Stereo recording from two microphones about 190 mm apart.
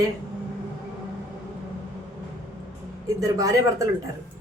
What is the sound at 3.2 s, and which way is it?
Speech, 15° right (ahead or behind).